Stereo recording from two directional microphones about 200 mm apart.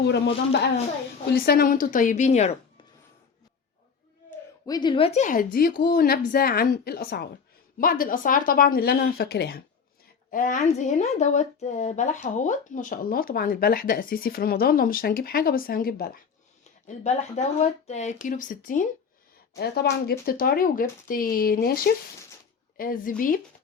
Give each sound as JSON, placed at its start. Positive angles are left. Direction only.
{"t": 1.3, "sound": "speech", "side_deg": 50}
{"t": 4.3, "sound": "speech", "side_deg": 20}
{"t": 10.3, "sound": "speech", "side_deg": 40}
{"t": 17.0, "sound": "speech", "side_deg": 35}
{"t": 19.5, "sound": "speech", "side_deg": 50}